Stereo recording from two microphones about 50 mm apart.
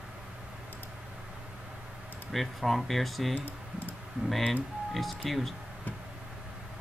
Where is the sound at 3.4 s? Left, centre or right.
Left.